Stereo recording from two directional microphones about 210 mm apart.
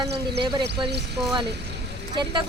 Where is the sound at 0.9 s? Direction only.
50° right (ahead or behind).